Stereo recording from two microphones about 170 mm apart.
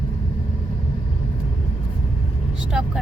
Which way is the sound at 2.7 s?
5° right (ahead or behind).